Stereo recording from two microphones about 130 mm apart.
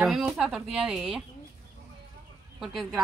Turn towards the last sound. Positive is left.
turn(degrees=0)  # may be behind; listen again after turning